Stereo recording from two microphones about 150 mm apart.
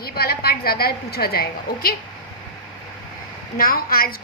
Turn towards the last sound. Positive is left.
turn(degrees=75)  # may be behind; listen again after turning